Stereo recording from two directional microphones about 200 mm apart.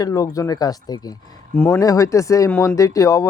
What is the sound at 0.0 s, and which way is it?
Speech, 15° left (ahead or behind).